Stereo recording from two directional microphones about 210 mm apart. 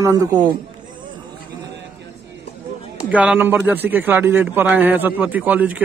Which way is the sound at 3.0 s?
5° right (ahead or behind).